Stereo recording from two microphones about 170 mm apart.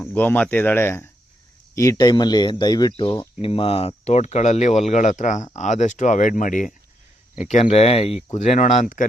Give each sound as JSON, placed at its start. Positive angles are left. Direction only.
{"t": 0.0, "sound": "speech", "side_deg": 10}